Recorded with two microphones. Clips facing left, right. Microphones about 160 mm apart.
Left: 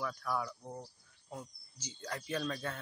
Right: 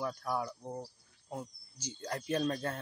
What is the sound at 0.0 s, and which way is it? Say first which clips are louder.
Speech: right 2 dB; 35° right (ahead or behind).